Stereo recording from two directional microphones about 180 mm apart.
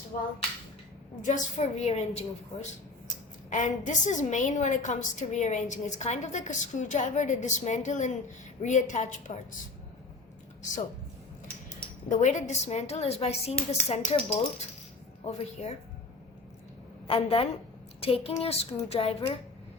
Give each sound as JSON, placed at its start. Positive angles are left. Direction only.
{"t": 0.1, "sound": "a woman's voice", "side_deg": 45}
{"t": 12.0, "sound": "a woman's voice", "side_deg": 45}
{"t": 15.2, "sound": "a woman's voice", "side_deg": 35}
{"t": 17.1, "sound": "a woman's voice", "side_deg": 30}